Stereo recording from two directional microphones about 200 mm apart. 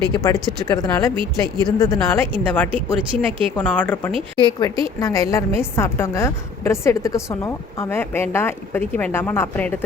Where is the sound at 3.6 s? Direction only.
5° left (ahead or behind).